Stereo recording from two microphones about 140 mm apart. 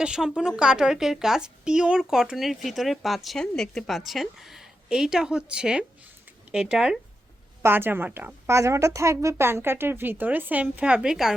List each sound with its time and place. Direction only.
0.0 s a woman's voice: 5° right (ahead or behind)
7.6 s a woman's voice: 15° right (ahead or behind)